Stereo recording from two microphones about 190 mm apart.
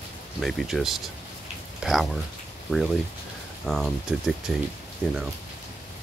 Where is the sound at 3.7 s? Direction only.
Centre (ahead or behind).